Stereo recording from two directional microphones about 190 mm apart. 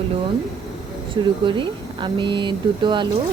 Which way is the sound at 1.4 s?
25° right (ahead or behind).